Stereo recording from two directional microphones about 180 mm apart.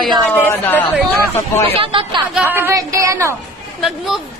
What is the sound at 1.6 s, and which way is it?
Speech, 30° right (ahead or behind).